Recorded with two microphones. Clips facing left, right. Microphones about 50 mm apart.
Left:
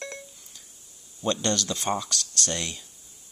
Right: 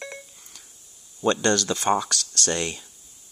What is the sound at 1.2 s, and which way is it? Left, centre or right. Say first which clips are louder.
Speech: right 5 dB; right.